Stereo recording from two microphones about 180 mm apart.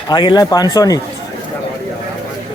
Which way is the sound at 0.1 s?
25° left (ahead or behind).